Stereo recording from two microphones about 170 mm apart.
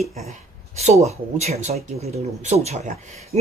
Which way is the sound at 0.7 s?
40° right (ahead or behind).